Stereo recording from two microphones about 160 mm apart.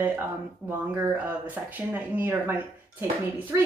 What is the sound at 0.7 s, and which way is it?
A woman's voice, 15° right (ahead or behind).